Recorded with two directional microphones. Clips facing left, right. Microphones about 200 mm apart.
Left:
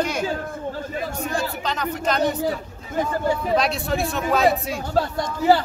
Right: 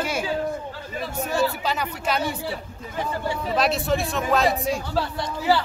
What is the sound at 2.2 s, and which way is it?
Speech, 45° left (ahead or behind).